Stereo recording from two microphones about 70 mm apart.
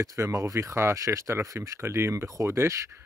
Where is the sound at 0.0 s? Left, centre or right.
Right.